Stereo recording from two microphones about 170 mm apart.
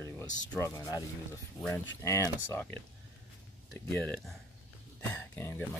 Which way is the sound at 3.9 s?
10° left (ahead or behind).